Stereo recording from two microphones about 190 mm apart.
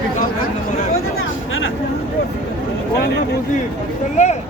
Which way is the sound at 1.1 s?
90° left.